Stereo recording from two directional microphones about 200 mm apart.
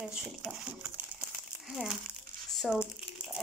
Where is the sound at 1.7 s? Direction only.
5° right (ahead or behind).